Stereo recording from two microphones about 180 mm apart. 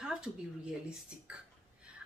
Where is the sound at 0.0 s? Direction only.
5° right (ahead or behind).